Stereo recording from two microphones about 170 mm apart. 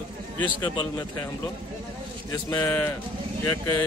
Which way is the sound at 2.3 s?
15° left (ahead or behind).